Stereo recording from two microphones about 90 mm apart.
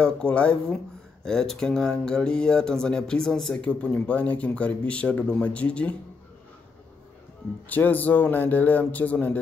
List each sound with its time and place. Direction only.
0.0 s speech: 10° left (ahead or behind)
7.6 s speech: 20° left (ahead or behind)